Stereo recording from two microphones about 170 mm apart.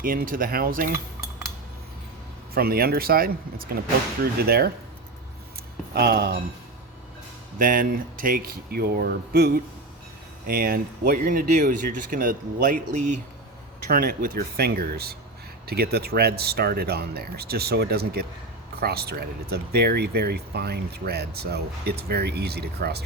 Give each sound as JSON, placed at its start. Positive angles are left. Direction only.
{"t": 0.0, "sound": "speech", "side_deg": -55}
{"t": 2.6, "sound": "speech", "side_deg": -65}
{"t": 5.9, "sound": "speech", "side_deg": -65}
{"t": 7.6, "sound": "speech", "side_deg": -55}
{"t": 13.9, "sound": "speech", "side_deg": -60}